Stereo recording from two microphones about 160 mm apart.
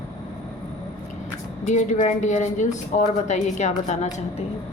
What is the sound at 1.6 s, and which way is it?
A woman's voice, 50° left (ahead or behind).